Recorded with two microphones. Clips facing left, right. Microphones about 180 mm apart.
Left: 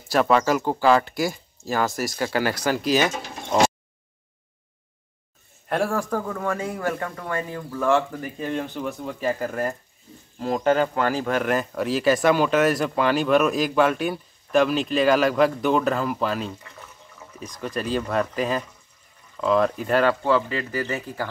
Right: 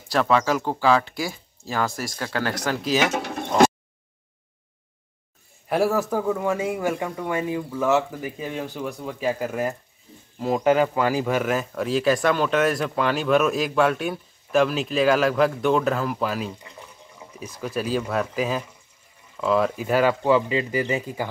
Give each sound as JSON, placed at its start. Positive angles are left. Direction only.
{"t": 0.1, "sound": "speech", "side_deg": 5}
{"t": 3.0, "sound": "pigeon", "side_deg": -65}
{"t": 5.7, "sound": "speech", "side_deg": -5}
{"t": 16.5, "sound": "speech", "side_deg": -15}